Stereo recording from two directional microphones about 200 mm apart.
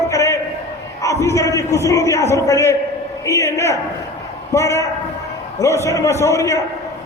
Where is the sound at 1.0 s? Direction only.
15° left (ahead or behind).